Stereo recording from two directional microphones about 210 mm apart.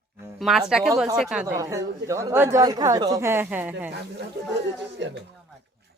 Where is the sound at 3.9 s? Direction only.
55° right (ahead or behind).